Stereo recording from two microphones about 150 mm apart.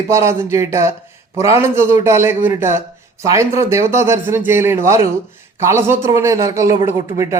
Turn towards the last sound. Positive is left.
turn(degrees=-20)  # may be behind; listen again after turning